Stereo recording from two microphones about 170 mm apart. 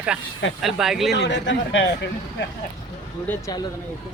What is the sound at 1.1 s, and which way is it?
Speech, 85° left.